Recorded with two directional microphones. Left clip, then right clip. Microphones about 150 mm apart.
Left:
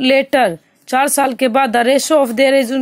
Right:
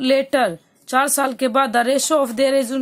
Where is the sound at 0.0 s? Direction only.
20° left (ahead or behind).